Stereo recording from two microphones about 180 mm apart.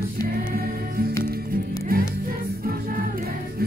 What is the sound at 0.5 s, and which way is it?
Music, 55° right (ahead or behind).